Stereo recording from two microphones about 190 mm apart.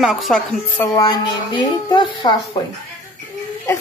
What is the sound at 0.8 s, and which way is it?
A woman's voice, 20° left (ahead or behind).